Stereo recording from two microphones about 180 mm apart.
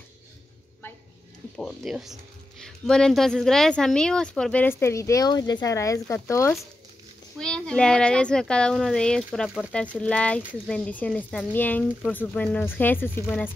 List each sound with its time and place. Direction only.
1.6 s speech: centre (ahead or behind); by 6.5 s 15° left (ahead or behind)
7.3 s speech: 5° left (ahead or behind)